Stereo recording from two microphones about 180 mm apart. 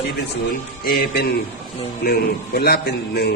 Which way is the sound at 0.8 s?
55° left (ahead or behind).